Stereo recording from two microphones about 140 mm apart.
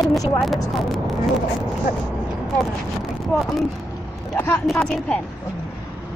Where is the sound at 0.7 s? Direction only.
Centre (ahead or behind).